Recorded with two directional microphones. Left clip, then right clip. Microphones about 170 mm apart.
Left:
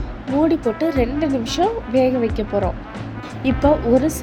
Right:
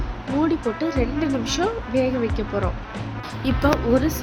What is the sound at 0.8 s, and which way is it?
Speech, 15° left (ahead or behind).